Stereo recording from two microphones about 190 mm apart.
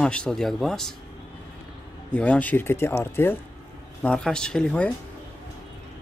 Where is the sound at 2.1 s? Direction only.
5° left (ahead or behind).